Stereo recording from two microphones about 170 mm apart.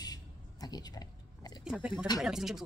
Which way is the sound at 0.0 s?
25° left (ahead or behind).